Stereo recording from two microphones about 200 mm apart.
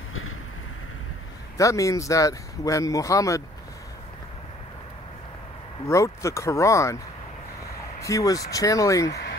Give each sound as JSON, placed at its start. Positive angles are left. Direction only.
{"t": 1.6, "sound": "speech", "side_deg": 15}
{"t": 5.9, "sound": "speech", "side_deg": 15}
{"t": 8.0, "sound": "speech", "side_deg": 15}
{"t": 9.1, "sound": "vehicle", "side_deg": 55}